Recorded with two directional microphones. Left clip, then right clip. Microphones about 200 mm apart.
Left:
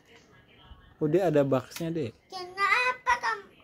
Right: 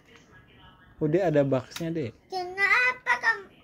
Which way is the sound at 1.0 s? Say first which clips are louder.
Right 1 dB; 15° left (ahead or behind).